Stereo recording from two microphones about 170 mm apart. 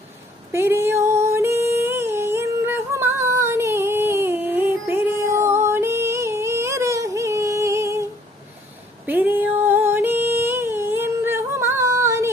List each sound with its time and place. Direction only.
0.5 s female singing: 15° right (ahead or behind)
9.0 s music: 10° right (ahead or behind)